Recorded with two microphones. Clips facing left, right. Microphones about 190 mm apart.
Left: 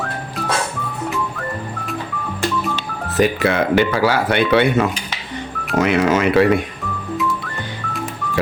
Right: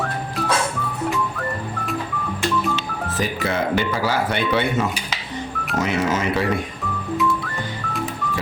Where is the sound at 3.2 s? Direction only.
70° left (ahead or behind).